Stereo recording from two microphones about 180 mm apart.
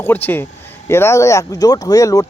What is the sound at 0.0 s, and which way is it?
Speech, 10° left (ahead or behind).